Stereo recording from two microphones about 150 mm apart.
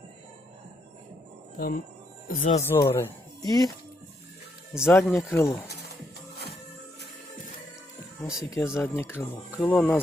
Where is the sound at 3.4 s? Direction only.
25° left (ahead or behind).